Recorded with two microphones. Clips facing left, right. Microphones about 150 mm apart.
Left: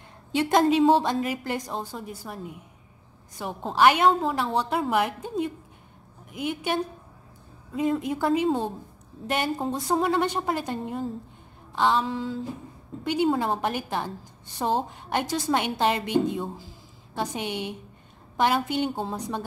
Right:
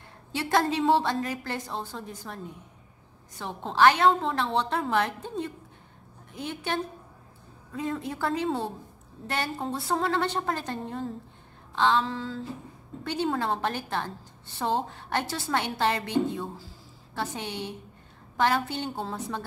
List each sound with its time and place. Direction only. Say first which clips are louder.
0.3 s a woman's voice: left 5 dB; 20° left (ahead or behind)